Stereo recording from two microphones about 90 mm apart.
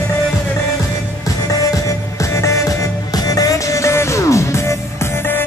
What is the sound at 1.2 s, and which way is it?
Music, 40° left (ahead or behind).